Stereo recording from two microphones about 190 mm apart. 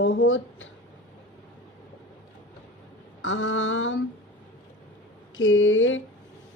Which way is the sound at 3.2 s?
90° left.